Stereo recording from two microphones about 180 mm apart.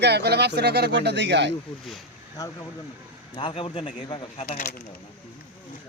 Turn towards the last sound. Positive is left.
turn(degrees=50)  # may be behind; listen again after turning